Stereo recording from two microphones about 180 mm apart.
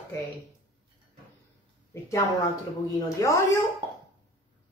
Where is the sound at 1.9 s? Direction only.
15° left (ahead or behind).